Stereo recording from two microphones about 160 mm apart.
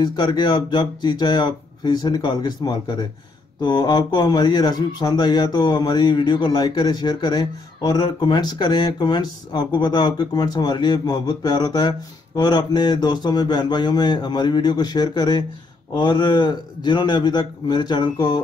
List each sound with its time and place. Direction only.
0.0 s a man's voice: 25° left (ahead or behind)